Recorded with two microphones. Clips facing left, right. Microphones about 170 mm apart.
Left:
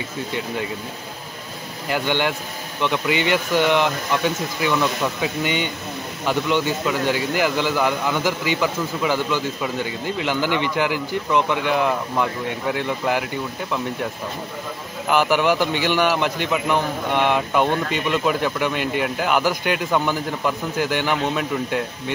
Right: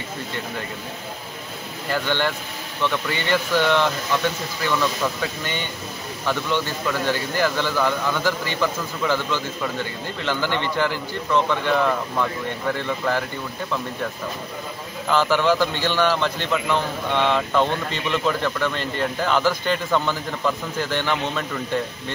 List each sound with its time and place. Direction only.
1.9 s a man's voice: 15° left (ahead or behind)
15.0 s a man's voice: 15° left (ahead or behind)